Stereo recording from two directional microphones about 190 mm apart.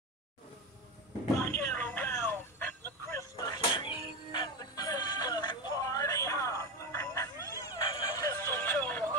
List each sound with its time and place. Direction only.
1.7 s music: 10° left (ahead or behind)